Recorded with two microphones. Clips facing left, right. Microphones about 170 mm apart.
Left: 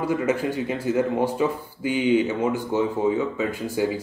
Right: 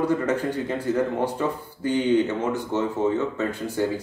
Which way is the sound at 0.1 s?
10° left (ahead or behind).